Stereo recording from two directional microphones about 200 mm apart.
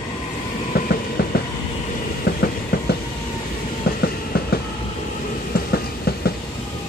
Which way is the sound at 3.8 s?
50° left (ahead or behind).